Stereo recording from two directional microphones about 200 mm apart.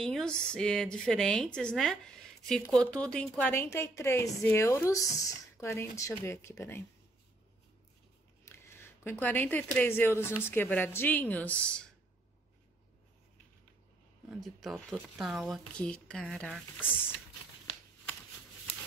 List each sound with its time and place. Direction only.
0.0 s a woman's voice: 5° left (ahead or behind)
8.5 s a woman's voice: 10° left (ahead or behind)
14.4 s speech: centre (ahead or behind)